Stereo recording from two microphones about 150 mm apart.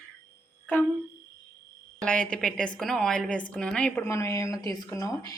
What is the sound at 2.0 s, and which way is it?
A woman's voice, 5° left (ahead or behind).